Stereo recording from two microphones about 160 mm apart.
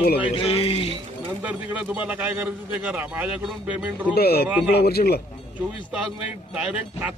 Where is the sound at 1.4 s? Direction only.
10° right (ahead or behind).